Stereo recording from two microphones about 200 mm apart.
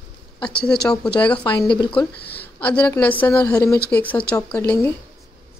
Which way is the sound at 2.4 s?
5° left (ahead or behind).